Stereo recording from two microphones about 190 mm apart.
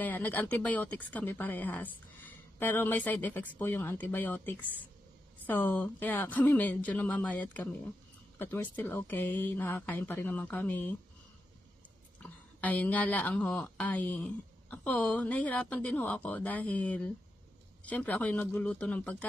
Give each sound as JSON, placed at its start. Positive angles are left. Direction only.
{"t": 0.0, "sound": "speech", "side_deg": 10}
{"t": 12.2, "sound": "speech", "side_deg": 10}